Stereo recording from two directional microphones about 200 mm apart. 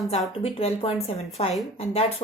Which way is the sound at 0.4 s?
30° left (ahead or behind).